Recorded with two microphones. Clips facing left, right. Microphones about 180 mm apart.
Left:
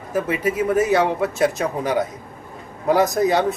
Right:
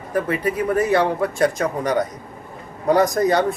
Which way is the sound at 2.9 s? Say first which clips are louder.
Right 1 dB; 5° left (ahead or behind).